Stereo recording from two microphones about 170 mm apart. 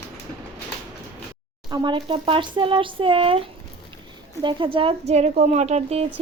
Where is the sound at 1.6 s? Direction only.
30° right (ahead or behind).